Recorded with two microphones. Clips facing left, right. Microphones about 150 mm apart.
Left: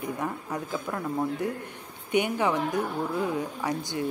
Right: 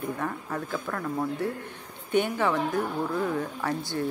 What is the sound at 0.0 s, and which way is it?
A woman's voice, 15° left (ahead or behind).